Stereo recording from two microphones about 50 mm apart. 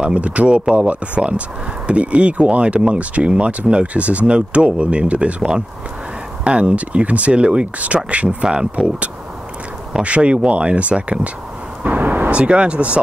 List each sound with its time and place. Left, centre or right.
0.0 s speech: right
11.8 s a sound: right
12.3 s speech: right